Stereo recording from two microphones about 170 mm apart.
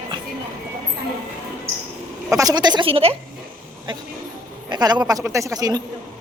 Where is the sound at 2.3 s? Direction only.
25° right (ahead or behind).